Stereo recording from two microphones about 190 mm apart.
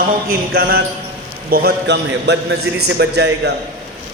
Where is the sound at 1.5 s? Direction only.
55° right (ahead or behind).